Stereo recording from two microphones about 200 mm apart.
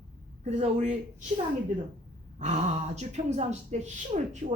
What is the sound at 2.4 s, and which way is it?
A woman's voice, 35° right (ahead or behind).